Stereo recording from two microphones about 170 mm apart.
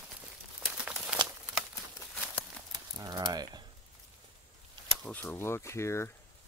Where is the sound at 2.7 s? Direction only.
25° right (ahead or behind).